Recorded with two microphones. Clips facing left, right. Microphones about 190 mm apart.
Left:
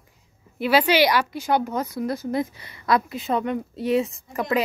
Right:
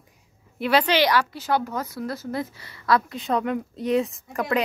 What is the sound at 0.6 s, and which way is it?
A woman's voice, 5° left (ahead or behind).